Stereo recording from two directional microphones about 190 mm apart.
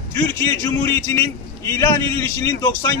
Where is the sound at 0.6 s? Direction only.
15° left (ahead or behind).